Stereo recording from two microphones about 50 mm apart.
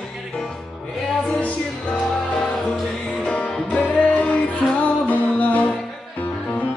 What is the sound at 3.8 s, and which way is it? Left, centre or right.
Music, centre.